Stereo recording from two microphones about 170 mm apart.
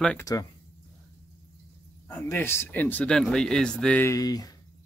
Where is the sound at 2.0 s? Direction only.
15° left (ahead or behind).